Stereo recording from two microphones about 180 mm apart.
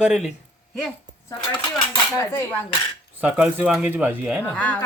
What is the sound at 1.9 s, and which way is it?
Cutlery, 20° left (ahead or behind).